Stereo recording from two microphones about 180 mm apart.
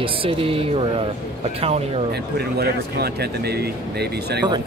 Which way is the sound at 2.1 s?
65° right (ahead or behind).